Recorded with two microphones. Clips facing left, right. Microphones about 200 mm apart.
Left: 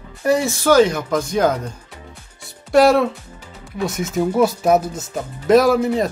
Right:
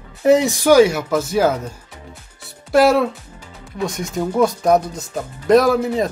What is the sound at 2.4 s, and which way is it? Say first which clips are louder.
Music: left 1 dB; centre (ahead or behind).